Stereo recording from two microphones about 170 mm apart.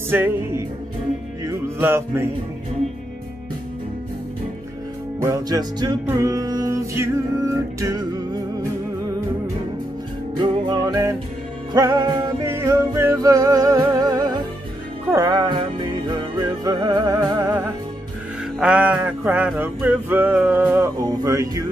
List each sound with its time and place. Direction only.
0.1 s music: 15° right (ahead or behind)
5.2 s music: 20° right (ahead or behind)
10.3 s music: 25° right (ahead or behind)
18.6 s music: 5° right (ahead or behind)